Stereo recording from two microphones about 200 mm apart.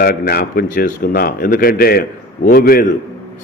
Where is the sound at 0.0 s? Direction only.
50° left (ahead or behind).